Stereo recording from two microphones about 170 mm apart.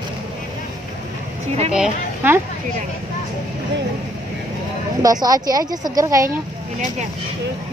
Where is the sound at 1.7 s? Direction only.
10° right (ahead or behind).